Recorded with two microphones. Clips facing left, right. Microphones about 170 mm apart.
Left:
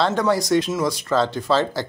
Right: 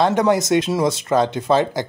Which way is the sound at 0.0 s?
20° right (ahead or behind).